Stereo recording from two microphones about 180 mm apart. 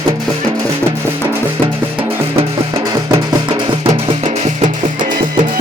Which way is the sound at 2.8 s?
20° right (ahead or behind).